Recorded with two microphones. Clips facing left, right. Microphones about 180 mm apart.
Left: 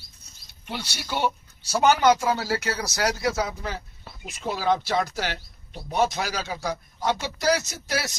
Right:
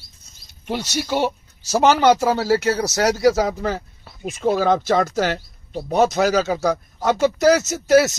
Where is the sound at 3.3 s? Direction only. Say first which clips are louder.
Right 8 dB; 45° right (ahead or behind).